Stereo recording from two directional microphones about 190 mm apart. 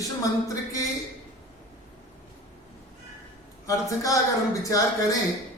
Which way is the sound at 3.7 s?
15° left (ahead or behind).